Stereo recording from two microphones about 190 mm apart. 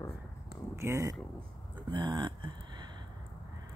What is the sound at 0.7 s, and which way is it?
Speech, 15° right (ahead or behind).